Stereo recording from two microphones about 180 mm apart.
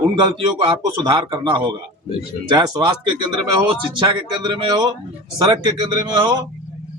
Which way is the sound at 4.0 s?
25° right (ahead or behind).